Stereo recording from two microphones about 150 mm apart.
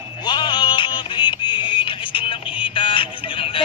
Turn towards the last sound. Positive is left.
turn(degrees=35)  # may be behind; listen again after turning